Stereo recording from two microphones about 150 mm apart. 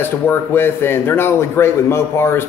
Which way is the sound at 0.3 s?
15° left (ahead or behind).